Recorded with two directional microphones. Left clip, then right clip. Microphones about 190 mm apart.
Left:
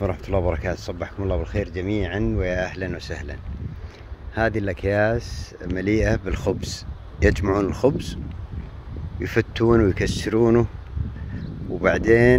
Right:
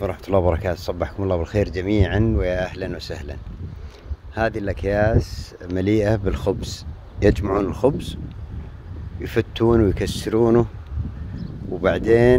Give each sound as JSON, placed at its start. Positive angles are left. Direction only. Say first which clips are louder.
{"t": 0.0, "sound": "speech", "louder": "right 4 dB", "side_deg": -20}
{"t": 4.4, "sound": "speech", "louder": "even", "side_deg": 0}
{"t": 9.2, "sound": "speech", "louder": "right 1 dB", "side_deg": -5}
{"t": 11.8, "sound": "speech", "louder": "right 1 dB", "side_deg": -10}